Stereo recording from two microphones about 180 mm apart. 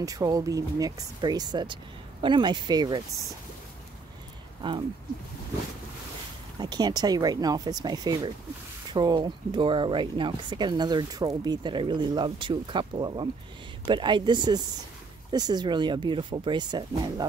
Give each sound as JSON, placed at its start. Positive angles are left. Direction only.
{"t": 0.0, "sound": "speech", "side_deg": -20}
{"t": 4.6, "sound": "speech", "side_deg": -25}
{"t": 6.6, "sound": "speech", "side_deg": -25}